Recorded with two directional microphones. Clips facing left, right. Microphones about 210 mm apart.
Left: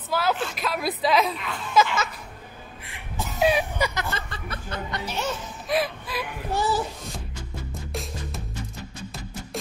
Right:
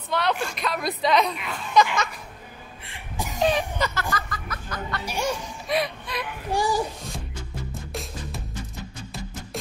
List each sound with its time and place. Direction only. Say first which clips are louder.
0.1 s a sound: even; 5° left (ahead or behind)
3.3 s a sound: left 1 dB; 10° left (ahead or behind)
4.1 s chuckle: right 2 dB; 30° left (ahead or behind)
5.0 s speech: right 4 dB; 10° right (ahead or behind)
5.7 s whimper: left 1 dB; centre (ahead or behind)
6.5 s a child's voice: right 1 dB; 15° right (ahead or behind)
7.9 s music: left 2 dB; centre (ahead or behind)